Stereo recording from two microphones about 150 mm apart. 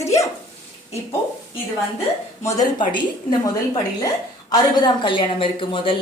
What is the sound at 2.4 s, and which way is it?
Speech, 20° left (ahead or behind).